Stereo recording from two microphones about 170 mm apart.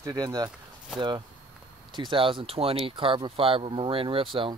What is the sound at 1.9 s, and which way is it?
Speech, 30° right (ahead or behind).